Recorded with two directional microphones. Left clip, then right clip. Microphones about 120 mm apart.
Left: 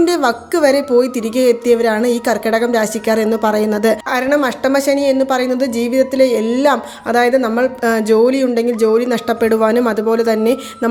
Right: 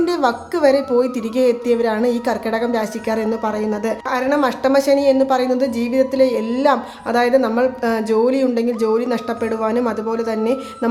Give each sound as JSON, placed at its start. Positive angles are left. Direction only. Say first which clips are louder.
{"t": 0.0, "sound": "a woman's voice", "louder": "left 3 dB", "side_deg": 35}